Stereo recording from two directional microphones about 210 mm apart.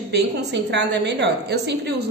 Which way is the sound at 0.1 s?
55° right (ahead or behind).